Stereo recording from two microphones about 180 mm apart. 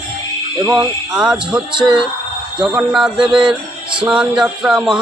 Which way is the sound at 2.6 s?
5° right (ahead or behind).